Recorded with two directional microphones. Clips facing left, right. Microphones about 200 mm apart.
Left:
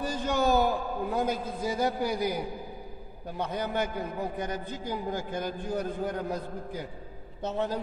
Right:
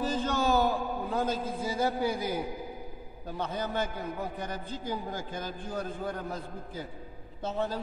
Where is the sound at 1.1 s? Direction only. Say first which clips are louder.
Even; 15° left (ahead or behind).